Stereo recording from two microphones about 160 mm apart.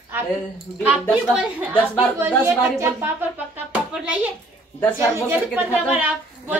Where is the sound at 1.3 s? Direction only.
10° right (ahead or behind).